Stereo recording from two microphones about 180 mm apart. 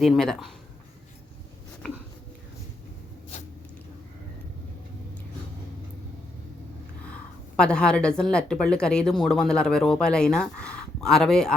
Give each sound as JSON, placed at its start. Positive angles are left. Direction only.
{"t": 0.0, "sound": "speech", "side_deg": 0}
{"t": 7.5, "sound": "speech", "side_deg": 5}